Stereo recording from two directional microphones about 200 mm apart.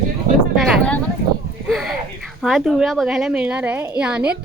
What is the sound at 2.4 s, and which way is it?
A woman's voice, centre (ahead or behind).